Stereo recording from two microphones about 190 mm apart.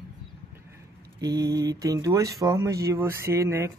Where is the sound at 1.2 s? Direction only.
20° right (ahead or behind).